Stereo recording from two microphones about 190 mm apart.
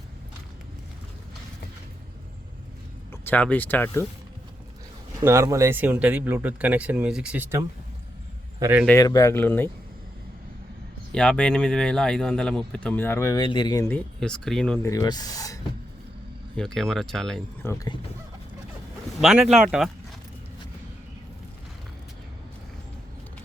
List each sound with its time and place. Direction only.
3.1 s speech: 10° left (ahead or behind)
5.2 s a man's voice: 15° right (ahead or behind)
8.9 s speech: 20° left (ahead or behind)
11.1 s speech: 5° left (ahead or behind); by 13.8 s 20° left (ahead or behind)
14.2 s speech: centre (ahead or behind)
14.8 s speech: 20° left (ahead or behind)
16.6 s speech: centre (ahead or behind)
17.7 s speech: 15° left (ahead or behind)
19.2 s speech: 5° right (ahead or behind)